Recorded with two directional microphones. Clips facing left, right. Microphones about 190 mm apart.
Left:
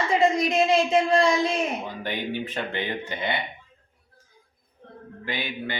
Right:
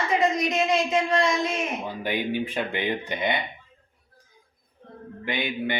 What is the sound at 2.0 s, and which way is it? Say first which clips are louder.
Speech: right 3 dB; 10° right (ahead or behind).